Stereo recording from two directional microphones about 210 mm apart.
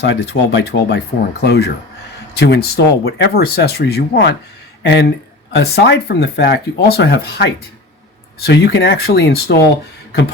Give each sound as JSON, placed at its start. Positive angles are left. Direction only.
{"t": 0.0, "sound": "speech", "side_deg": 55}